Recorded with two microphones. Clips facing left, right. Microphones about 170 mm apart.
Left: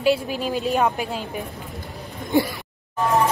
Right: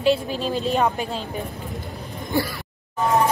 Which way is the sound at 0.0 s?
10° left (ahead or behind).